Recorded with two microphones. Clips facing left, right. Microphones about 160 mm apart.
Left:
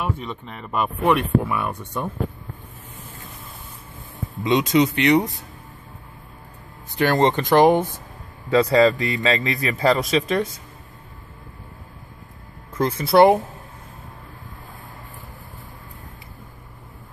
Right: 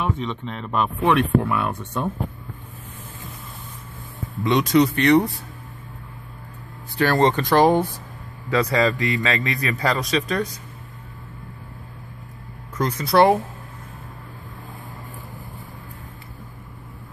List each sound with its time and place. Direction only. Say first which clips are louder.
0.0 s speech: right 2 dB; 10° left (ahead or behind)
4.4 s speech: right 1 dB; 20° left (ahead or behind)
7.0 s speech: even; 20° left (ahead or behind)
12.7 s speech: left 2 dB; 25° left (ahead or behind)